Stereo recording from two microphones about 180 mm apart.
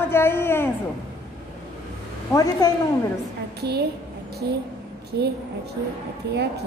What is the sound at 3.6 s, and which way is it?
Speech, 65° right (ahead or behind).